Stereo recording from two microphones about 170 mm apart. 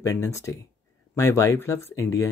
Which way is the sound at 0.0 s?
15° left (ahead or behind).